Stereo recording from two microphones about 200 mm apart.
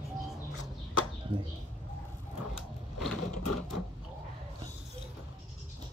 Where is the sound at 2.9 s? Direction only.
Centre (ahead or behind).